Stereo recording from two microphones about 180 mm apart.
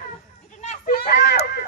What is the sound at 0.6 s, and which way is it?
Children playing, 55° left (ahead or behind).